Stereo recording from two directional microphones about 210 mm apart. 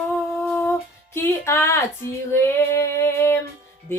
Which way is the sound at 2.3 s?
10° left (ahead or behind).